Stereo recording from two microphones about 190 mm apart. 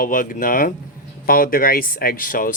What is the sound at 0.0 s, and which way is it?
Speech, 45° left (ahead or behind).